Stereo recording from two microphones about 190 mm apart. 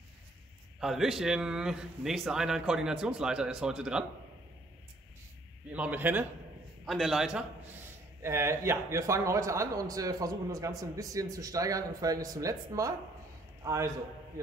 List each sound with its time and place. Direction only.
0.7 s a man's voice: centre (ahead or behind)
5.7 s a man's voice: 10° right (ahead or behind)
8.2 s speech: 15° right (ahead or behind)